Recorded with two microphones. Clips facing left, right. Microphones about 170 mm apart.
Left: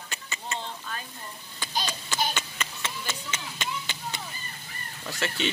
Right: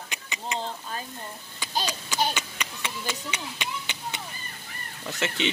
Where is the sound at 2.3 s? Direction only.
15° right (ahead or behind).